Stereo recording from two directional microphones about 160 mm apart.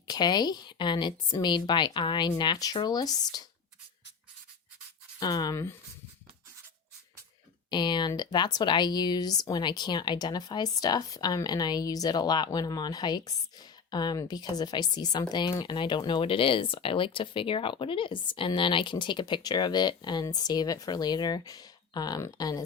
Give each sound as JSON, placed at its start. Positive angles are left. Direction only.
{"t": 0.1, "sound": "speech", "side_deg": 25}
{"t": 5.2, "sound": "speech", "side_deg": 25}
{"t": 7.7, "sound": "speech", "side_deg": 30}